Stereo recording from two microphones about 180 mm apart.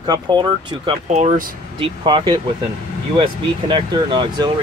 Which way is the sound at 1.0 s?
40° right (ahead or behind).